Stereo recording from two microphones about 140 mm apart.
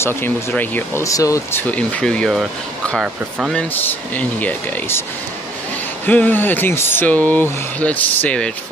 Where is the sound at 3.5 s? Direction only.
10° left (ahead or behind).